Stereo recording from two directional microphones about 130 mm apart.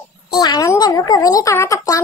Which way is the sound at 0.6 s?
30° left (ahead or behind).